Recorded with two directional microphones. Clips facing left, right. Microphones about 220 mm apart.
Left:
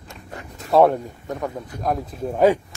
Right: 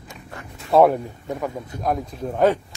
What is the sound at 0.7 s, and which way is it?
A man's voice, centre (ahead or behind).